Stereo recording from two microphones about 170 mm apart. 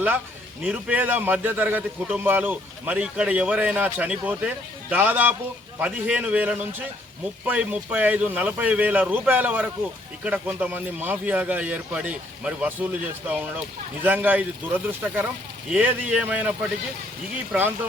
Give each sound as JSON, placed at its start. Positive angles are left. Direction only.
{"t": 0.6, "sound": "a man's voice", "side_deg": -5}